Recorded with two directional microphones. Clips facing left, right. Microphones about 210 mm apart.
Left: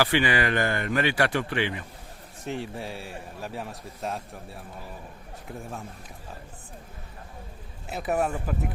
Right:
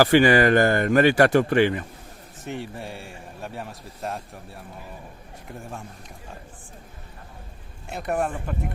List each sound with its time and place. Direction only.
0.0 s speech: 45° right (ahead or behind)
2.4 s speech: centre (ahead or behind)
7.9 s speech: centre (ahead or behind)